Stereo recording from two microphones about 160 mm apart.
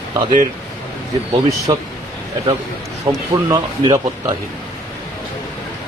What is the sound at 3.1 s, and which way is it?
Speech, 25° right (ahead or behind).